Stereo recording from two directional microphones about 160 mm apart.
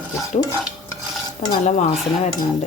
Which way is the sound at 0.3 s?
45° left (ahead or behind).